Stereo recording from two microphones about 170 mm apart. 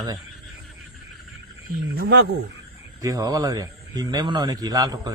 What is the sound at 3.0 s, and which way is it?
A man's voice, 20° right (ahead or behind).